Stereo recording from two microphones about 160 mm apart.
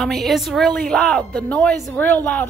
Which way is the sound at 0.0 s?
Centre (ahead or behind).